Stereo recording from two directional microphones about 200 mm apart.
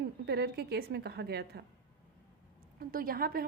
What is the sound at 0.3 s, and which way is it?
A woman's voice, 55° right (ahead or behind).